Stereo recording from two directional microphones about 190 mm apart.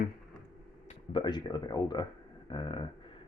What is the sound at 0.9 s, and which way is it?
Speech, 25° left (ahead or behind).